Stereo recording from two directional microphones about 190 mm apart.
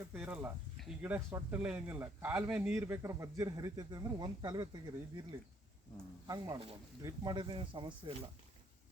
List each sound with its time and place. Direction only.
0.1 s speech: 10° right (ahead or behind)
6.2 s speech: 20° right (ahead or behind)